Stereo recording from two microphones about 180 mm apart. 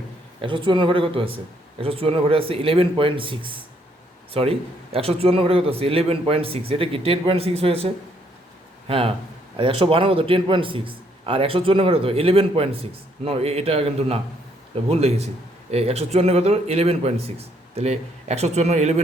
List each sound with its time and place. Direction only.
0.4 s a man's voice: 25° right (ahead or behind)